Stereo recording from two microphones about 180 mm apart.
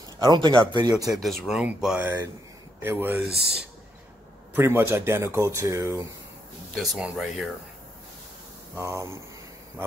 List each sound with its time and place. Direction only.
0.2 s speech: 25° right (ahead or behind)
1.1 s speech: centre (ahead or behind); by 6.0 s 15° right (ahead or behind)
6.7 s speech: centre (ahead or behind)
8.9 s speech: 15° right (ahead or behind)